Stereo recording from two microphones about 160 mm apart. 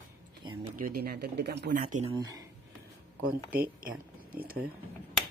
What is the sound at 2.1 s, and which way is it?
Speech, 25° right (ahead or behind).